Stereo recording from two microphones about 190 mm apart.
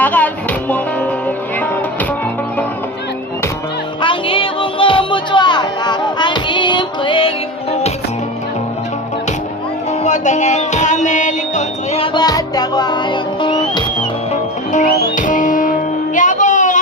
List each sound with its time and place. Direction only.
0.0 s music: 10° left (ahead or behind)
4.0 s music: 25° left (ahead or behind)
10.0 s music: 40° left (ahead or behind); by 13.8 s 25° left (ahead or behind)
14.7 s music: 40° left (ahead or behind)